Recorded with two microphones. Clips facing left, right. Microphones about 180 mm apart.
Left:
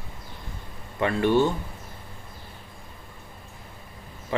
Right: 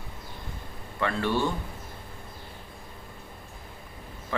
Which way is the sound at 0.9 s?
20° left (ahead or behind).